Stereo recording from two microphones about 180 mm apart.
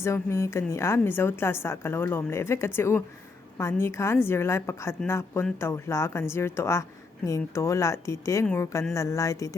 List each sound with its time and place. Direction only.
0.0 s speech: 15° left (ahead or behind)